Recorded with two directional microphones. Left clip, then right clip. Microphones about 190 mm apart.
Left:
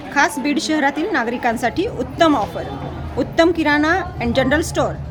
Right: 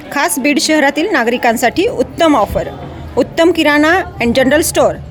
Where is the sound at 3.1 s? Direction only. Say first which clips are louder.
Right 5 dB; 45° right (ahead or behind).